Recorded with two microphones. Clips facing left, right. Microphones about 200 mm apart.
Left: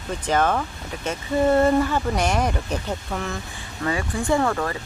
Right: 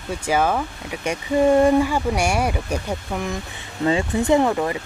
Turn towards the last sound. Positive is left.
turn(degrees=-15)  # may be behind; listen again after turning